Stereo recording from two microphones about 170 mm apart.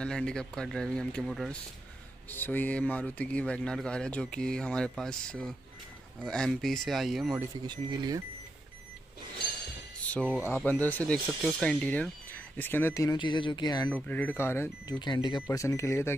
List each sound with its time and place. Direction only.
0.0 s speech: 5° left (ahead or behind)
2.2 s speech: 10° left (ahead or behind)
7.6 s speech: 25° right (ahead or behind)
10.1 s speech: 5° left (ahead or behind); by 13.9 s 25° left (ahead or behind)
13.9 s speech: 10° left (ahead or behind)
15.0 s speech: 25° left (ahead or behind)